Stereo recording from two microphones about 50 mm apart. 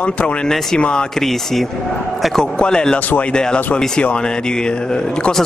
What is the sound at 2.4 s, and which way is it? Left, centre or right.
Speech, centre.